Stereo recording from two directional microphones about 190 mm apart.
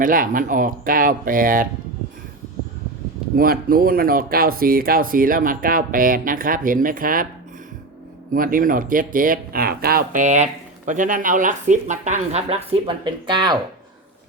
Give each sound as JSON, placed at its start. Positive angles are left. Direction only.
{"t": 0.0, "sound": "speech", "side_deg": -45}
{"t": 3.3, "sound": "speech", "side_deg": -50}
{"t": 8.3, "sound": "speech", "side_deg": -45}